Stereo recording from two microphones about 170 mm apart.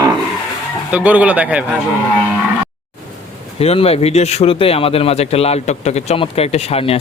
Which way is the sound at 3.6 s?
35° left (ahead or behind).